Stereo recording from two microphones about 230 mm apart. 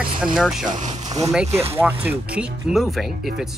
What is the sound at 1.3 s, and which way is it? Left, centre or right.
Speech, centre.